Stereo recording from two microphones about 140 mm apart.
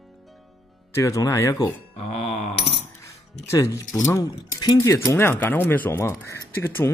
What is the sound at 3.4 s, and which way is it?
Speech, 20° left (ahead or behind).